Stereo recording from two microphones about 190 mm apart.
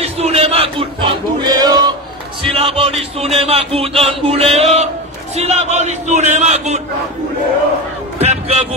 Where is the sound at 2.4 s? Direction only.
30° right (ahead or behind).